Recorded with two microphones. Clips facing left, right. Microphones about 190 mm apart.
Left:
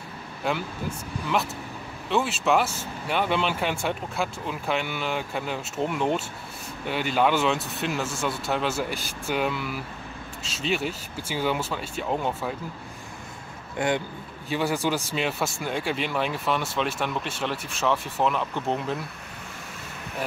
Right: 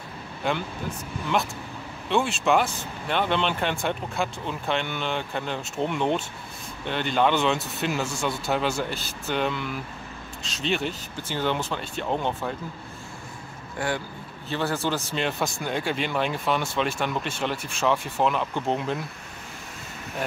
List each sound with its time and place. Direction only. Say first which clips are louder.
0.4 s speech: right 1 dB; centre (ahead or behind)
2.0 s speech: right 1 dB; 5° left (ahead or behind)
13.7 s speech: left 3 dB; 20° left (ahead or behind); by 18.9 s centre (ahead or behind)